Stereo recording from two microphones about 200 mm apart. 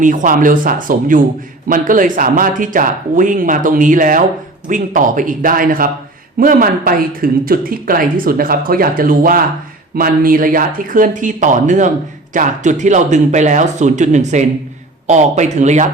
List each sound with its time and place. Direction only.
0.0 s speech: 40° right (ahead or behind)